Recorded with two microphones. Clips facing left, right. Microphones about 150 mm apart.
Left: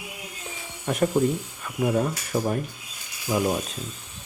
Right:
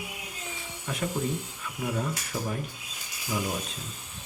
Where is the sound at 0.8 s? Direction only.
55° left (ahead or behind).